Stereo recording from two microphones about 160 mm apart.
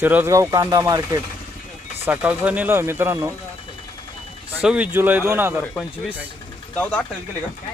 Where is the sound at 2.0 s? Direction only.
10° right (ahead or behind).